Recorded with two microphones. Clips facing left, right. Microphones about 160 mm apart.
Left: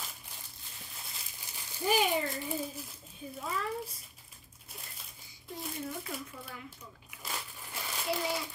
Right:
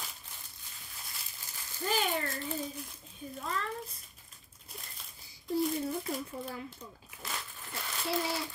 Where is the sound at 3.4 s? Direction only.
10° left (ahead or behind).